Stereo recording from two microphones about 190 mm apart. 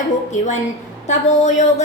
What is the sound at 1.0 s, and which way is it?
Speech, 40° left (ahead or behind).